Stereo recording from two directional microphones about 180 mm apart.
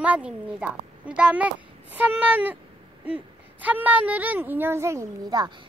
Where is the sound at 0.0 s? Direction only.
5° right (ahead or behind).